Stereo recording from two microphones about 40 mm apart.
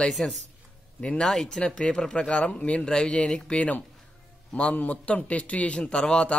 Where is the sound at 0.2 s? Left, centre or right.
Left.